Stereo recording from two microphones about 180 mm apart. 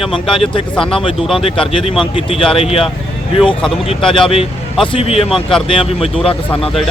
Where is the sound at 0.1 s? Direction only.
30° left (ahead or behind).